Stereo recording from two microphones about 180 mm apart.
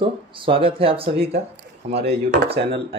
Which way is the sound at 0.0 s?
30° right (ahead or behind).